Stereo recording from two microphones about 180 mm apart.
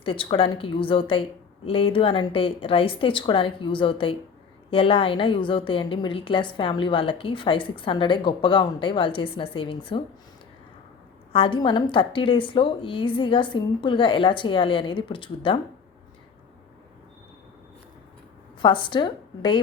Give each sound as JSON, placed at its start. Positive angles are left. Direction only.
{"t": 0.0, "sound": "a woman's voice", "side_deg": 30}
{"t": 11.3, "sound": "a woman's voice", "side_deg": 30}
{"t": 18.6, "sound": "a woman's voice", "side_deg": 25}